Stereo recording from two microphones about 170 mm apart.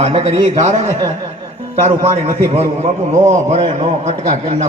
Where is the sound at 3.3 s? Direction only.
35° right (ahead or behind).